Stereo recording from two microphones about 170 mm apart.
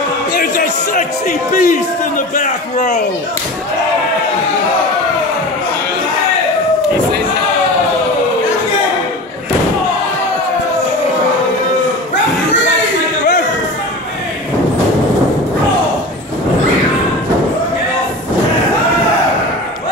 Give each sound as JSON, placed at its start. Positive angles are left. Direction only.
{"t": 1.5, "sound": "a man's voice", "side_deg": 50}